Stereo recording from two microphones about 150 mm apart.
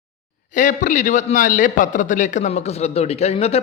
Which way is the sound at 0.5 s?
55° left (ahead or behind).